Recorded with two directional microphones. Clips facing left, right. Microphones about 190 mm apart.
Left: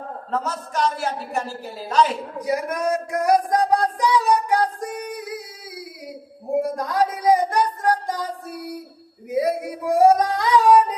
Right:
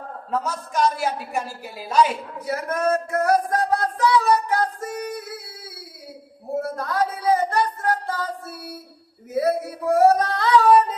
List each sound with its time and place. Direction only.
0.3 s a woman's voice: 10° right (ahead or behind)
2.4 s music: 15° left (ahead or behind)
6.5 s a sound: 15° left (ahead or behind)
9.3 s male singing: 15° left (ahead or behind)